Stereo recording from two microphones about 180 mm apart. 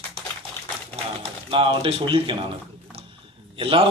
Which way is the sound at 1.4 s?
30° right (ahead or behind).